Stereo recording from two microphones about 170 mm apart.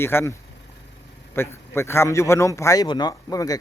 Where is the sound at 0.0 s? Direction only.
15° left (ahead or behind).